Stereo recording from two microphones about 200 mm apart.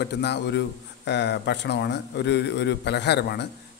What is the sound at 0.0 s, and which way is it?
A man's voice, 55° left (ahead or behind).